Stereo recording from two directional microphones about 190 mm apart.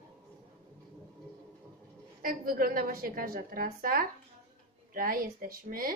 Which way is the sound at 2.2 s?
50° right (ahead or behind).